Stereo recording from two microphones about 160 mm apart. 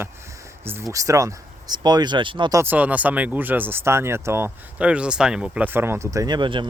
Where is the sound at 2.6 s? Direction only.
10° right (ahead or behind).